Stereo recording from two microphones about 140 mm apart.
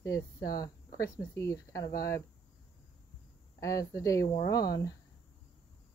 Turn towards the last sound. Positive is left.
turn(degrees=25)  # may be behind; listen again after turning